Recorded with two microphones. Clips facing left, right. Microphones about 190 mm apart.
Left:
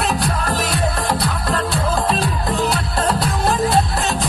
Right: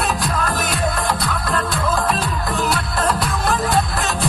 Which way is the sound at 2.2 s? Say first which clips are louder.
Left 2 dB; 35° left (ahead or behind).